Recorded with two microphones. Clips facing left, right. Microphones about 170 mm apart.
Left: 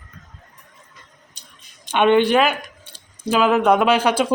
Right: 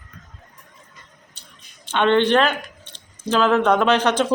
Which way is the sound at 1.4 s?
15° left (ahead or behind).